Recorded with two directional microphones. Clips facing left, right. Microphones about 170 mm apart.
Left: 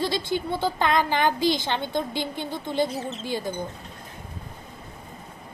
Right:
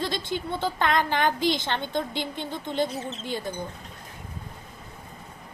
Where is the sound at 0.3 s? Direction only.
10° left (ahead or behind).